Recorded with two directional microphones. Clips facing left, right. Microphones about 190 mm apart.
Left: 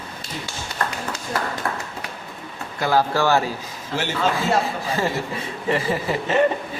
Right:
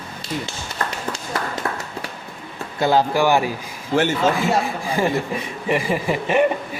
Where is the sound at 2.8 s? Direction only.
20° right (ahead or behind).